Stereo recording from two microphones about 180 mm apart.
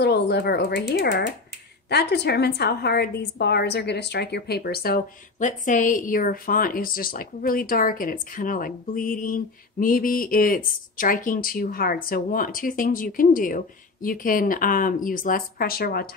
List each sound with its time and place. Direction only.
0.0 s a woman's voice: 65° left (ahead or behind)